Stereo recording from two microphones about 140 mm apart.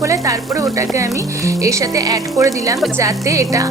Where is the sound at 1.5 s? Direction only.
25° right (ahead or behind).